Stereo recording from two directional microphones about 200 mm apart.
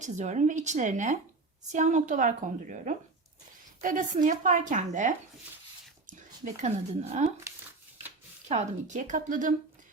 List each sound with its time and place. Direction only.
0.0 s speech: 35° right (ahead or behind)
8.4 s speech: 35° right (ahead or behind)